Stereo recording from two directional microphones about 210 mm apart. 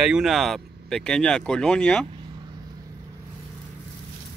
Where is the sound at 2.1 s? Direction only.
20° right (ahead or behind).